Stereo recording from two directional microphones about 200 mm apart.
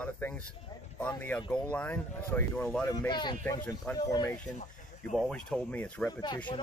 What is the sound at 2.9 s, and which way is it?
Speech, 20° left (ahead or behind).